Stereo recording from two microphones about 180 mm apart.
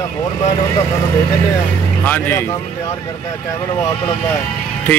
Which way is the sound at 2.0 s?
10° left (ahead or behind).